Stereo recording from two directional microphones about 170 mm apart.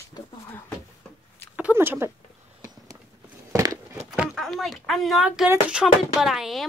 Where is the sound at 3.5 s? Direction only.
20° right (ahead or behind).